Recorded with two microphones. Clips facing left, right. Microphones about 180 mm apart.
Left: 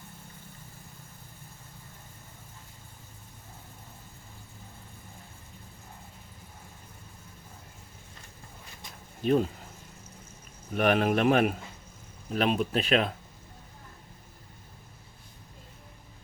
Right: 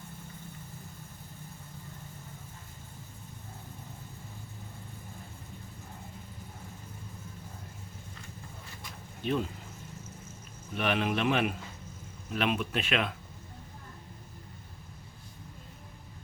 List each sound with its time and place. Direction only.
9.2 s speech: 40° left (ahead or behind)
10.8 s a man's voice: 45° left (ahead or behind)